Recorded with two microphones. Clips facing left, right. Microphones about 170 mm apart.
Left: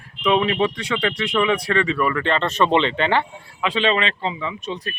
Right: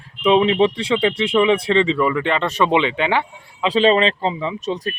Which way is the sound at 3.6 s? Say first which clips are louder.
Right 6 dB; 35° right (ahead or behind).